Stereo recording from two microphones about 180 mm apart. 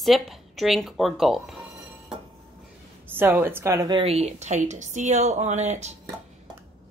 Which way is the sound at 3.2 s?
10° right (ahead or behind).